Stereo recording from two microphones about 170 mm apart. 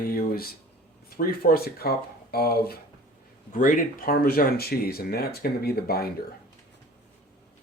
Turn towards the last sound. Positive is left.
turn(degrees=65)  # may be behind; listen again after turning